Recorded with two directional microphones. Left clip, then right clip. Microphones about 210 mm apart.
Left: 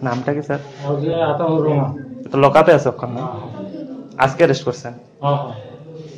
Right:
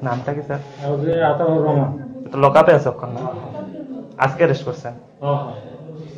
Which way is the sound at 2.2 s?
45° left (ahead or behind).